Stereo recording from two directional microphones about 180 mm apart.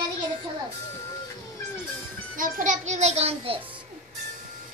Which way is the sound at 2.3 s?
45° right (ahead or behind).